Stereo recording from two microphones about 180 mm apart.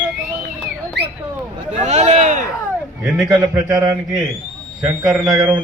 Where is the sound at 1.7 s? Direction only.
40° right (ahead or behind).